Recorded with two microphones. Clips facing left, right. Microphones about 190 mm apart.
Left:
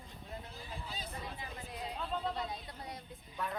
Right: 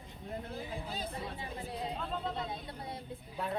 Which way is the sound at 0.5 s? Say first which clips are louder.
Right 6 dB; 55° right (ahead or behind).